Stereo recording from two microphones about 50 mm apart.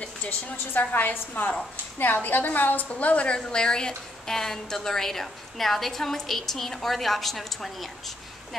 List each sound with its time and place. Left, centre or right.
0.0 s a woman's voice: left
2.9 s a woman's voice: left; by 7.9 s centre